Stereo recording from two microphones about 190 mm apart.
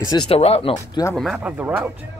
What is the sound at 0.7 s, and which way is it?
Speech, 15° left (ahead or behind).